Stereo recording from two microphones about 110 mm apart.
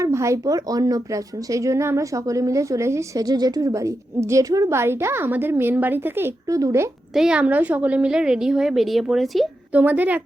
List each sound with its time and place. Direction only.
0.0 s speech: 25° right (ahead or behind)
7.1 s a woman's voice: 5° right (ahead or behind)
9.7 s a woman's voice: 15° right (ahead or behind)